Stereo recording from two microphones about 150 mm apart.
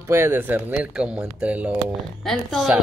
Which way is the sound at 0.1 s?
15° right (ahead or behind).